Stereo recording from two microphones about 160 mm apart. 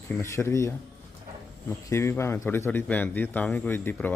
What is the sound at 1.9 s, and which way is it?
Speech, 15° left (ahead or behind).